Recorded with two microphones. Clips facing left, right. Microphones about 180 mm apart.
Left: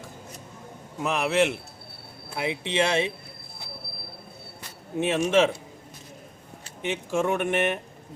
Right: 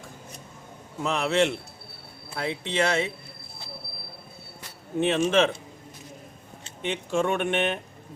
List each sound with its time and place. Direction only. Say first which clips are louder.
1.0 s speech: even; centre (ahead or behind)
4.9 s speech: even; 10° left (ahead or behind)
6.8 s speech: even; 5° left (ahead or behind)